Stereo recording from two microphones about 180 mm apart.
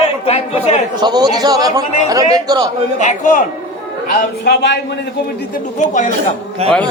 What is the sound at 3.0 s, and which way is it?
Speech, 45° left (ahead or behind).